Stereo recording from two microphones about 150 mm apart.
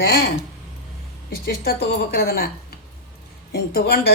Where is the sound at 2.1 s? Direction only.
90° left.